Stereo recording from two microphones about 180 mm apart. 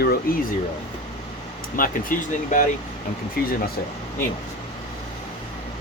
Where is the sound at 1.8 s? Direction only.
50° left (ahead or behind).